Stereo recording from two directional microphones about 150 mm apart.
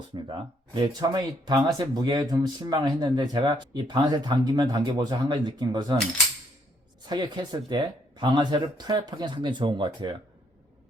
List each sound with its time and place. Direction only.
0.3 s speech: 30° right (ahead or behind)
7.1 s speech: 30° right (ahead or behind)